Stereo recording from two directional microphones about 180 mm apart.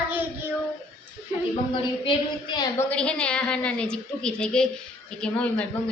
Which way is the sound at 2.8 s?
5° left (ahead or behind).